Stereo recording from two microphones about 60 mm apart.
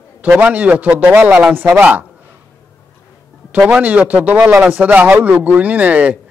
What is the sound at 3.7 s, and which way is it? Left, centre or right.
A man's voice, right.